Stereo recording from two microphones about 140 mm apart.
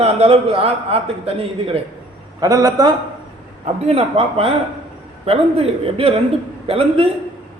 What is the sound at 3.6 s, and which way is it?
A man's voice, 45° right (ahead or behind).